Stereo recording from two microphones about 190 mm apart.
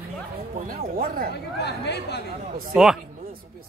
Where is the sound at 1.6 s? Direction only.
60° left (ahead or behind).